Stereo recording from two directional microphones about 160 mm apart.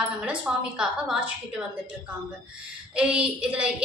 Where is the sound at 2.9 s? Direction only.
5° right (ahead or behind).